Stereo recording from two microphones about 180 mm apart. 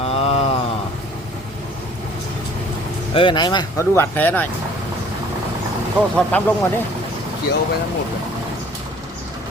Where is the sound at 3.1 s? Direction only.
25° left (ahead or behind); by 4.5 s 10° left (ahead or behind).